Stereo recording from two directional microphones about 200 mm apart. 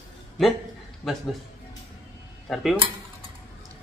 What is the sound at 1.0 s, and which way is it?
Speech, centre (ahead or behind).